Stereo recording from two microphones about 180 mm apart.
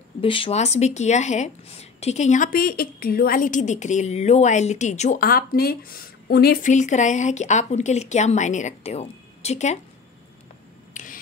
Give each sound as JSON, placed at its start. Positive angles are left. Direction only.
{"t": 0.2, "sound": "speech", "side_deg": 30}
{"t": 5.2, "sound": "speech", "side_deg": 55}
{"t": 10.9, "sound": "a sound", "side_deg": 45}